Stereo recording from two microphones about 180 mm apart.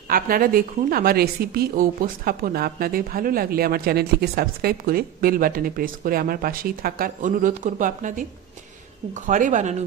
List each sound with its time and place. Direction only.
0.1 s a woman's voice: 55° right (ahead or behind)